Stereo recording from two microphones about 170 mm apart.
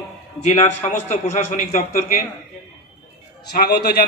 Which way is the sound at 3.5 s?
70° left (ahead or behind).